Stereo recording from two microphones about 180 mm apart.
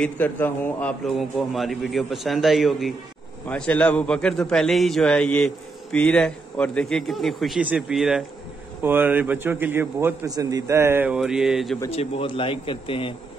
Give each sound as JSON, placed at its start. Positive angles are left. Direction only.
{"t": 0.0, "sound": "a man's voice", "side_deg": 10}
{"t": 11.9, "sound": "speech", "side_deg": 30}